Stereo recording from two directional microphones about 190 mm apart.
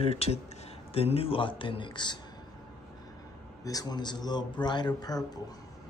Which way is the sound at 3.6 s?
20° left (ahead or behind).